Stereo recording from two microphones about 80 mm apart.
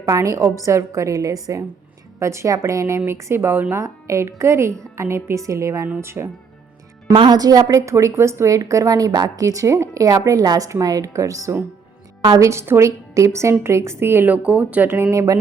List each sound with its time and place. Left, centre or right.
0.0 s a woman's voice: right
3.8 s a woman's voice: right
7.3 s a woman's voice: right
15.1 s a woman's voice: right